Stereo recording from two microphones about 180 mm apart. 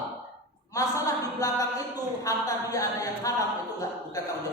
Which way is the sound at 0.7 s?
20° left (ahead or behind).